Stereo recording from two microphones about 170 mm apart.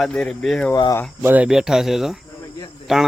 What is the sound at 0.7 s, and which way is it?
Speech, 25° left (ahead or behind).